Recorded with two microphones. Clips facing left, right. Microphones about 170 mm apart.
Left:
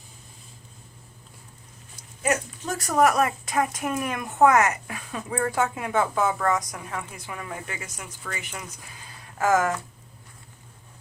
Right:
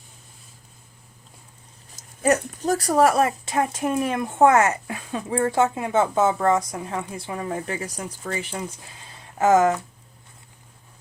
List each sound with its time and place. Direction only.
2.0 s speech: 40° right (ahead or behind)